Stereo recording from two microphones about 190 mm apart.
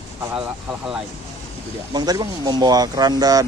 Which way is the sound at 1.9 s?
20° right (ahead or behind).